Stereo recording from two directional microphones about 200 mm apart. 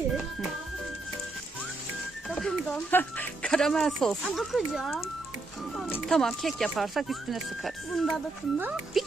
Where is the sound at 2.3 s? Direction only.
5° left (ahead or behind).